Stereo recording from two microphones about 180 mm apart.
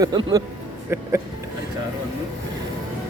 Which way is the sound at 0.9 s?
15° right (ahead or behind).